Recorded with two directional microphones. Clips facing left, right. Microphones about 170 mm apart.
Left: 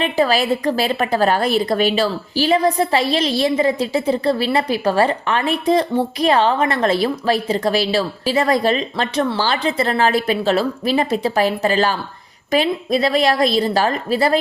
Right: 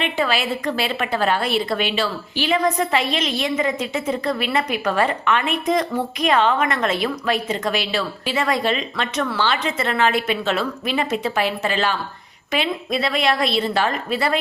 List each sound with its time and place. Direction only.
0.0 s a woman's voice: 40° left (ahead or behind)